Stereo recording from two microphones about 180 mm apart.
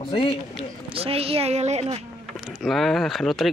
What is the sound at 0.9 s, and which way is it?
A woman's voice, 35° right (ahead or behind).